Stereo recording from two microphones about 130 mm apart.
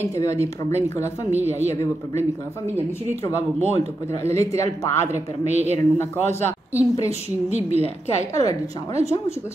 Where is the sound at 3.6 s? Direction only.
55° right (ahead or behind).